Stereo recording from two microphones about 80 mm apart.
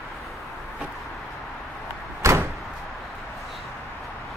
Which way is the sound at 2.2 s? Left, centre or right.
Right.